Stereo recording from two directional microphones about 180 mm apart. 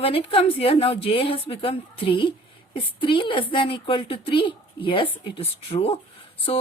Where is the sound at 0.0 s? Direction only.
30° left (ahead or behind).